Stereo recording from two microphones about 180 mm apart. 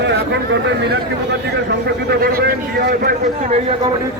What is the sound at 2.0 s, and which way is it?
Speech, 55° right (ahead or behind).